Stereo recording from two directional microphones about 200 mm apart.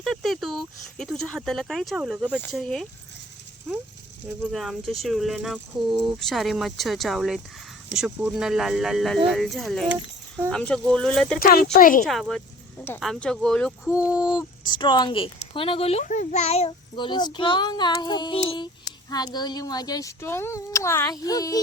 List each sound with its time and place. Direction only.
0.0 s speech: centre (ahead or behind)
4.5 s speech: centre (ahead or behind)
10.5 s speech: 5° left (ahead or behind)
11.3 s speech: 50° left (ahead or behind)
12.0 s speech: centre (ahead or behind)
14.1 s a child's voice: 20° left (ahead or behind)